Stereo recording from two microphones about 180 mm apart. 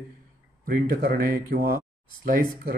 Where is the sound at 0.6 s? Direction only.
55° right (ahead or behind).